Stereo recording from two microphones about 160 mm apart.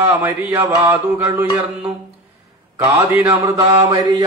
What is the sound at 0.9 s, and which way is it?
Mantra, 15° right (ahead or behind).